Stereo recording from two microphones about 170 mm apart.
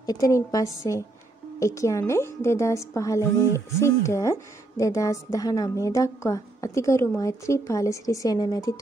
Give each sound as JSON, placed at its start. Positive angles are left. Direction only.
{"t": 0.0, "sound": "speech", "side_deg": 20}